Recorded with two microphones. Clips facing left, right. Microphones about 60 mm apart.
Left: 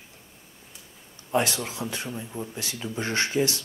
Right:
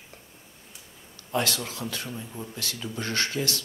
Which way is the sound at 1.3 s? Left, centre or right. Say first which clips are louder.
Left 3 dB; left.